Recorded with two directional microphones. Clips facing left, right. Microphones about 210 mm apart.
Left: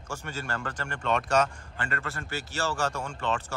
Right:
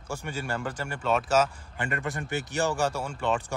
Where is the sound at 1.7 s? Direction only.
15° right (ahead or behind).